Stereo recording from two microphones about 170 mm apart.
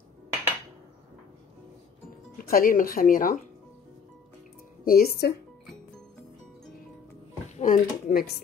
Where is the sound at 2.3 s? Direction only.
55° left (ahead or behind).